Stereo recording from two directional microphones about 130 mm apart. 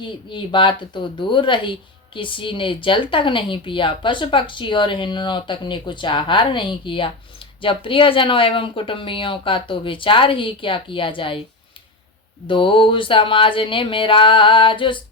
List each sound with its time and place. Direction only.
0.0 s speech: 40° left (ahead or behind)
12.5 s speech: 40° left (ahead or behind)